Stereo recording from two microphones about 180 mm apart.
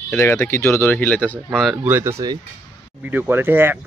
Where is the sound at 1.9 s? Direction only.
15° right (ahead or behind).